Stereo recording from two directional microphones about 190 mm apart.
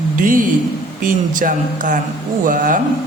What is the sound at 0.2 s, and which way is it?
Speech, 45° right (ahead or behind).